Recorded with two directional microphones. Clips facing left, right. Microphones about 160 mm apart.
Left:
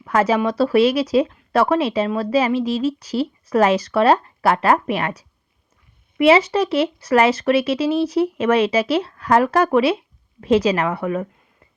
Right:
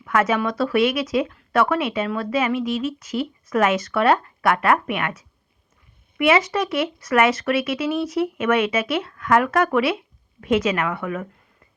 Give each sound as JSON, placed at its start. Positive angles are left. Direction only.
{"t": 0.0, "sound": "speech", "side_deg": 30}